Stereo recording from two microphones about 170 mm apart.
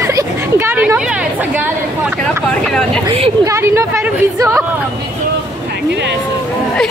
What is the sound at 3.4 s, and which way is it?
A woman's voice, 15° right (ahead or behind).